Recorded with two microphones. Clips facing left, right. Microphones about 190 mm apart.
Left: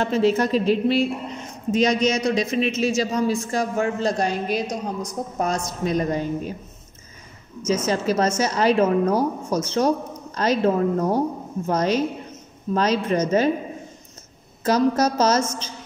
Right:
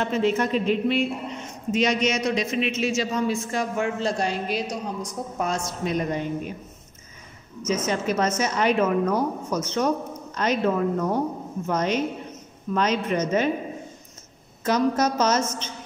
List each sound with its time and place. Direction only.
0.0 s a woman's voice: 35° left (ahead or behind)
7.6 s a woman's voice: 30° left (ahead or behind)
14.6 s a woman's voice: 35° left (ahead or behind)